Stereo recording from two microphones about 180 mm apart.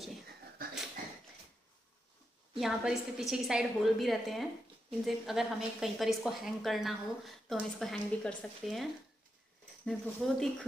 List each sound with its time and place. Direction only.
0.6 s a sound: 55° right (ahead or behind)
2.6 s a woman's voice: centre (ahead or behind)
9.8 s a woman's voice: centre (ahead or behind)